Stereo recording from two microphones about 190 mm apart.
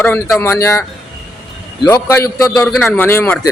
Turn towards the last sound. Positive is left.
turn(degrees=15)  # may be behind; listen again after turning